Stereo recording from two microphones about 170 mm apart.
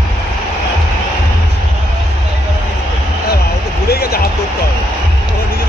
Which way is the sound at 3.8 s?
65° left (ahead or behind).